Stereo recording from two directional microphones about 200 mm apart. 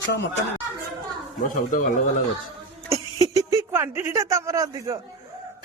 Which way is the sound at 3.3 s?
15° right (ahead or behind).